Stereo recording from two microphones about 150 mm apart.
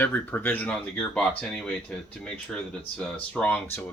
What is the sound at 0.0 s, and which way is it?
Speech, 10° left (ahead or behind).